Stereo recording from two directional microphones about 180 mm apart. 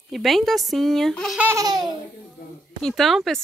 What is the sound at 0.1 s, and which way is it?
A woman's voice, centre (ahead or behind).